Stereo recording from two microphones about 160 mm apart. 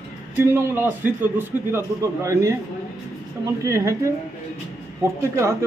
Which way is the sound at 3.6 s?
20° right (ahead or behind).